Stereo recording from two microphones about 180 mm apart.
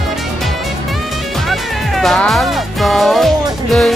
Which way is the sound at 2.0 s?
Centre (ahead or behind).